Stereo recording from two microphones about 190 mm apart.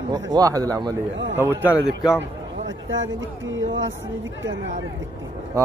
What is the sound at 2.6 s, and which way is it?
Speech, 85° right.